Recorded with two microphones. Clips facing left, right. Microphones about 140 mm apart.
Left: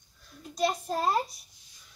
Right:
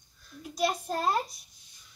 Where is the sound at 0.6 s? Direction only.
Centre (ahead or behind).